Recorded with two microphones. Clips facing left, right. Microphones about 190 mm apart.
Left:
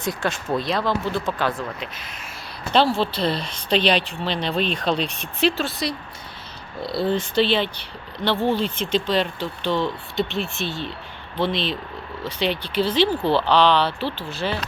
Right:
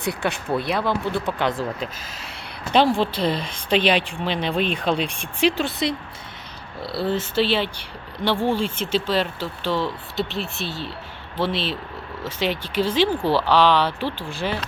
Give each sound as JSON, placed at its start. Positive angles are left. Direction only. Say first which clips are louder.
{"t": 0.2, "sound": "speech", "louder": "even", "side_deg": -15}
{"t": 2.7, "sound": "speech", "louder": "right 1 dB", "side_deg": -15}
{"t": 6.8, "sound": "speech", "louder": "left 2 dB", "side_deg": -5}